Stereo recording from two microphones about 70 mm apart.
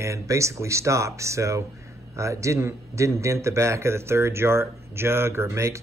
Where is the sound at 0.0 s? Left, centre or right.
Right.